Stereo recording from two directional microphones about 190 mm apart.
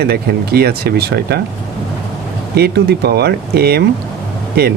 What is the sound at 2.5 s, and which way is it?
Speech, 55° right (ahead or behind).